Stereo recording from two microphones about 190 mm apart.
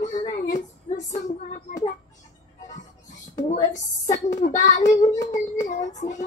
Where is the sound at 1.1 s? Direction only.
40° left (ahead or behind).